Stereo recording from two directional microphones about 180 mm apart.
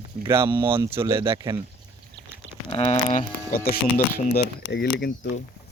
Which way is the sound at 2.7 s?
30° left (ahead or behind).